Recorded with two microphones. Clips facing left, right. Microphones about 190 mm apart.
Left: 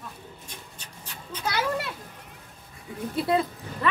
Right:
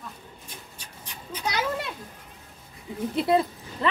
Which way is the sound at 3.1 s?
25° right (ahead or behind).